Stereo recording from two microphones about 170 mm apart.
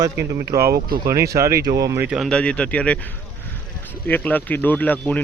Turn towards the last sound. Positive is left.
turn(degrees=10)  # may be behind; listen again after turning